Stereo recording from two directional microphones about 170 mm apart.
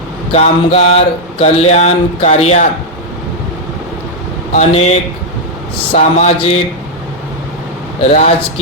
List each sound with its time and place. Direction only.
0.3 s music: 40° left (ahead or behind)
4.5 s music: 40° left (ahead or behind)